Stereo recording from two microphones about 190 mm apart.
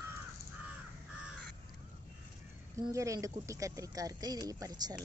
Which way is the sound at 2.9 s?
15° right (ahead or behind).